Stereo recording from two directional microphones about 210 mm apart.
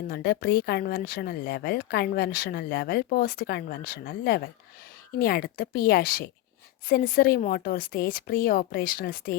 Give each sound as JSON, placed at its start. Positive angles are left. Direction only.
{"t": 0.1, "sound": "speech", "side_deg": 50}